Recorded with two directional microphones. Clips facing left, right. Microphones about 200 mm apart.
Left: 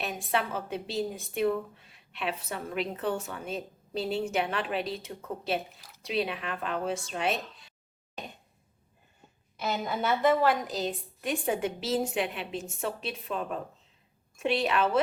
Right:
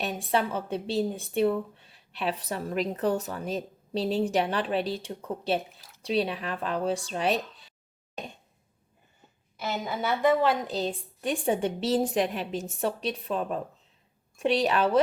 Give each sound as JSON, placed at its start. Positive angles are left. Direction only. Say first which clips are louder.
{"t": 0.2, "sound": "a woman's voice", "louder": "right 3 dB", "side_deg": -30}
{"t": 5.5, "sound": "a woman's voice", "louder": "right 2 dB", "side_deg": 0}
{"t": 6.0, "sound": "a woman's voice", "louder": "right 3 dB", "side_deg": -35}
{"t": 9.6, "sound": "a woman's voice", "louder": "even", "side_deg": -5}
{"t": 10.7, "sound": "a woman's voice", "louder": "right 2 dB", "side_deg": -30}